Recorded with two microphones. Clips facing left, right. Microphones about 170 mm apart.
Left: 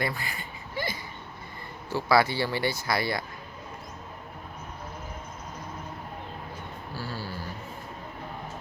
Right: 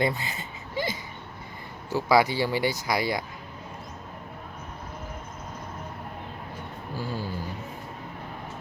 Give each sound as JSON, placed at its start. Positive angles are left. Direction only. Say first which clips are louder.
{"t": 0.0, "sound": "a sound", "louder": "right 5 dB", "side_deg": -20}
{"t": 1.9, "sound": "speech", "louder": "right 2 dB", "side_deg": -15}
{"t": 7.0, "sound": "speech", "louder": "right 4 dB", "side_deg": -15}